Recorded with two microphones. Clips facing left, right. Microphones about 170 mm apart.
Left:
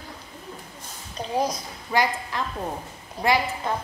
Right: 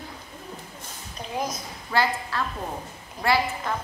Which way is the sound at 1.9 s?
15° left (ahead or behind).